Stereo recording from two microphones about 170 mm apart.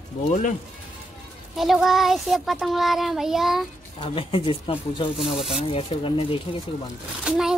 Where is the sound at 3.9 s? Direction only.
30° left (ahead or behind).